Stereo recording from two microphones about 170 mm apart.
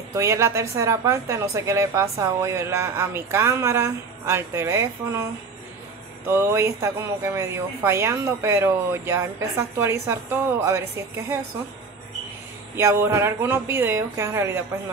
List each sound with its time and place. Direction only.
0.1 s speech: 20° right (ahead or behind)
6.2 s speech: 15° right (ahead or behind)
12.7 s speech: 15° right (ahead or behind)